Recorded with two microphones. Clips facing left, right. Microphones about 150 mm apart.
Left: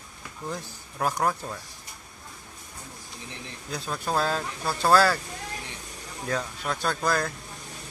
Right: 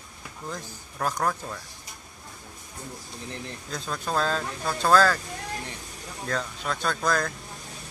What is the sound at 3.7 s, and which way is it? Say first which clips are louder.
Speech: left 1 dB; 5° left (ahead or behind).